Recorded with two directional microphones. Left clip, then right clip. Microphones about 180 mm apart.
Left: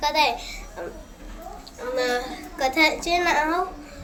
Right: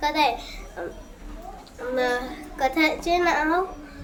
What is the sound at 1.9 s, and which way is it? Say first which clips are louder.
A child's voice: even; 15° right (ahead or behind).